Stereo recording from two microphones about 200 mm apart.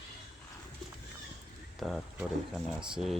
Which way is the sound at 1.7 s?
Centre (ahead or behind).